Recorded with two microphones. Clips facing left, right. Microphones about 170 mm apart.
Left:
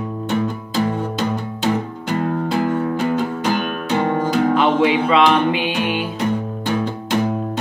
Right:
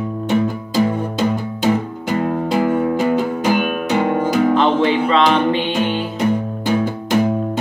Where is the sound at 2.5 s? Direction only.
15° right (ahead or behind).